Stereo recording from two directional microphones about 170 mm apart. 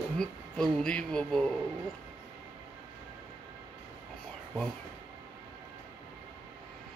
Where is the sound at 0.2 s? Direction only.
5° left (ahead or behind).